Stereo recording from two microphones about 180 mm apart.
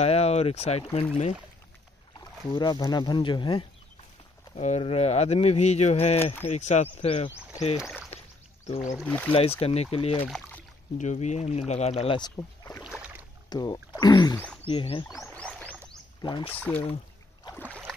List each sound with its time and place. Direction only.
0.0 s speech: 35° left (ahead or behind)
2.1 s speech: 25° left (ahead or behind)
4.6 s speech: 35° left (ahead or behind)
7.7 s speech: centre (ahead or behind)
8.6 s speech: 35° left (ahead or behind)
9.0 s speech: 10° left (ahead or behind)
9.3 s speech: 30° left (ahead or behind)
10.2 s speech: 10° left (ahead or behind)
11.0 s speech: 40° left (ahead or behind)
12.4 s rowboat: 15° left (ahead or behind)
12.8 s boat: 5° right (ahead or behind)
13.5 s speech: 25° left (ahead or behind)
16.5 s speech: 10° left (ahead or behind)
17.6 s boat: 5° left (ahead or behind)